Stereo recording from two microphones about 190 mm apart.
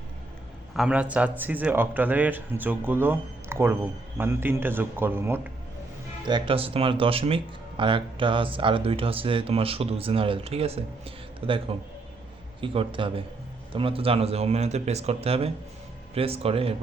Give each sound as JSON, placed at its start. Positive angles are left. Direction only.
{"t": 0.8, "sound": "a man's voice", "side_deg": -5}
{"t": 6.2, "sound": "speech", "side_deg": -25}